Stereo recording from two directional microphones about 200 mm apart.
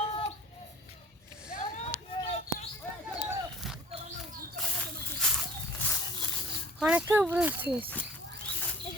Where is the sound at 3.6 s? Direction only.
Centre (ahead or behind).